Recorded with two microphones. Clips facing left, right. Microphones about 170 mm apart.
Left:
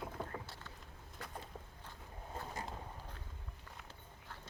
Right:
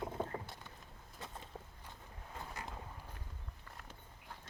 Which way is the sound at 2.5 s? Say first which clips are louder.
Left 2 dB; 25° left (ahead or behind).